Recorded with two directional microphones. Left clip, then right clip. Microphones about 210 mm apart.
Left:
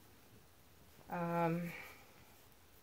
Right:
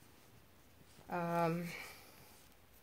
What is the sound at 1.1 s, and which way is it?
Speech, 40° right (ahead or behind).